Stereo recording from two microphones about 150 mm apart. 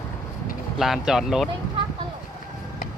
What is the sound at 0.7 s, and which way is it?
Speech, centre (ahead or behind).